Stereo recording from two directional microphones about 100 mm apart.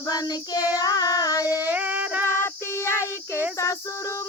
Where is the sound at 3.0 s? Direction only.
20° right (ahead or behind).